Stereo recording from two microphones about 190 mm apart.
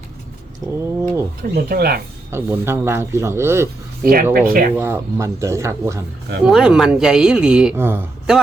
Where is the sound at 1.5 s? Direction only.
55° right (ahead or behind).